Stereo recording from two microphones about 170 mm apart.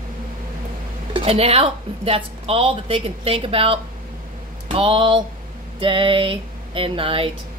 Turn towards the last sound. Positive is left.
turn(degrees=-30)  # may be behind; listen again after turning